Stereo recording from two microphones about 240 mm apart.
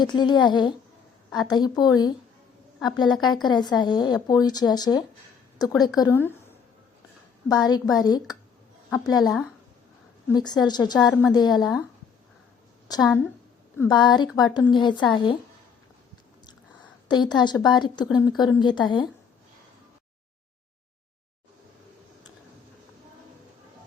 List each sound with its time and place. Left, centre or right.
0.0 s speech: centre
7.4 s speech: centre
12.9 s a woman's voice: centre
16.5 s a woman's voice: centre